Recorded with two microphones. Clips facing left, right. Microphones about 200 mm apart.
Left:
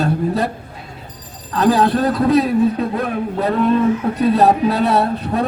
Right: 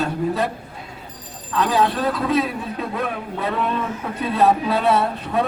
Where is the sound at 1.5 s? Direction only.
40° left (ahead or behind).